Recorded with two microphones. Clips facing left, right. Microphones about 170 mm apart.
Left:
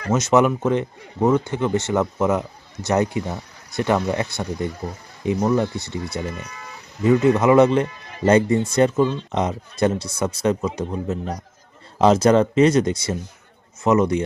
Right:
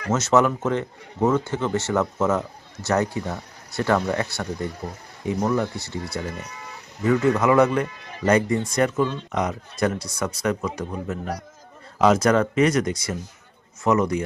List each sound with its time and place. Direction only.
0.1 s speech: 15° left (ahead or behind)